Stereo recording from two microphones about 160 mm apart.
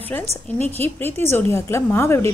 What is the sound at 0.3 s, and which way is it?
Speech, 40° right (ahead or behind).